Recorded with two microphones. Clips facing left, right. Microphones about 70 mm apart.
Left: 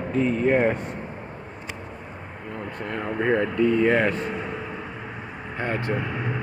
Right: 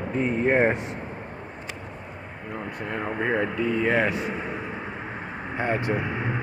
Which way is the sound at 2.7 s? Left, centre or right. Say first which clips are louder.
Left 2 dB; centre.